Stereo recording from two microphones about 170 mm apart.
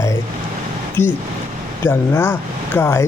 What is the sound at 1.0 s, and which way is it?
Speech, 15° left (ahead or behind).